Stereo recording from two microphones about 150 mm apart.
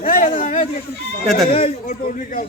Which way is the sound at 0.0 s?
65° left (ahead or behind).